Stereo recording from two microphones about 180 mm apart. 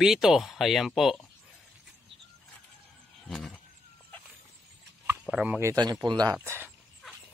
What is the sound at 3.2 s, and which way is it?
Neigh, centre (ahead or behind).